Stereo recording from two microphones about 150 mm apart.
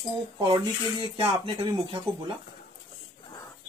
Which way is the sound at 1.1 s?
35° right (ahead or behind).